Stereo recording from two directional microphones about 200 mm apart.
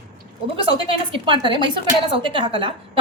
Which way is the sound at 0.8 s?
25° right (ahead or behind).